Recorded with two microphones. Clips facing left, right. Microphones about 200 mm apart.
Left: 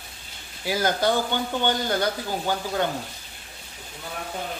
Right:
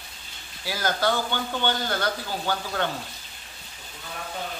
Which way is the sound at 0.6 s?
20° left (ahead or behind).